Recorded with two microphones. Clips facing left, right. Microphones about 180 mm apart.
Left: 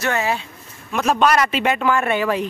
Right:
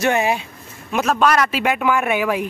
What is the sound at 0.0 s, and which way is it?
Speech, 15° right (ahead or behind).